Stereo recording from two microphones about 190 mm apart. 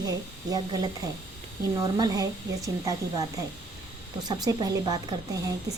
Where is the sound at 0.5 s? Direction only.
20° right (ahead or behind).